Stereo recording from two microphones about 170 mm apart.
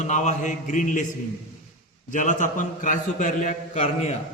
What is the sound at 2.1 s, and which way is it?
A man's voice, 50° left (ahead or behind).